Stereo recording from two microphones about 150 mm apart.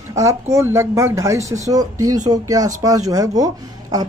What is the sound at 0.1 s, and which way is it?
Speech, 20° right (ahead or behind).